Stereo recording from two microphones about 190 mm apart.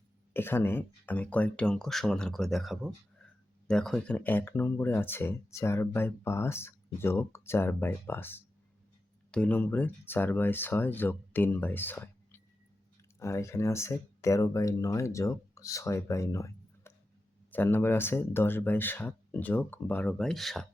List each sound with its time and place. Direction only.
0.3 s speech: 10° left (ahead or behind)